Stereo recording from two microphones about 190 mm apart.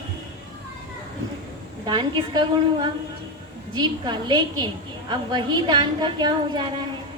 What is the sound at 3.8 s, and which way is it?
A woman's voice, 20° right (ahead or behind).